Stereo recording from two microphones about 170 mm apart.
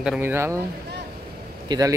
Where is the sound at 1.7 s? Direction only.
20° right (ahead or behind).